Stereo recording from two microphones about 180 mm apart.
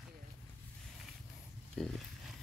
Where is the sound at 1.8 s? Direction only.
Centre (ahead or behind).